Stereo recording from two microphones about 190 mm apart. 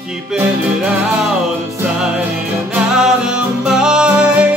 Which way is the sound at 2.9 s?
5° right (ahead or behind).